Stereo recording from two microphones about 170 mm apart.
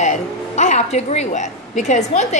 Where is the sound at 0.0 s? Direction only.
45° left (ahead or behind).